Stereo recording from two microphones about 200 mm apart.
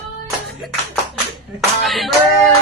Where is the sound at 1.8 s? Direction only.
Centre (ahead or behind).